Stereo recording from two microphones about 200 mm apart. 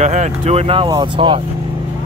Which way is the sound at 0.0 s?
35° right (ahead or behind).